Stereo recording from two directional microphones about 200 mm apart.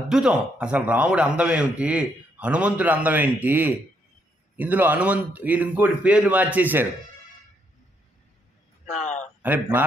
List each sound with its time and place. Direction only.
0.1 s a man's voice: 5° right (ahead or behind)
8.8 s a sound: 35° left (ahead or behind)
9.4 s a man's voice: 10° right (ahead or behind)